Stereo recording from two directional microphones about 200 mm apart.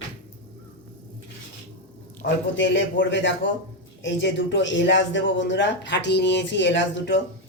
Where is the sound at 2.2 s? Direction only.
65° left (ahead or behind).